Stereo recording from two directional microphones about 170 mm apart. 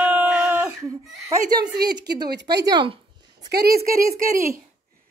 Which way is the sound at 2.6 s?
30° right (ahead or behind).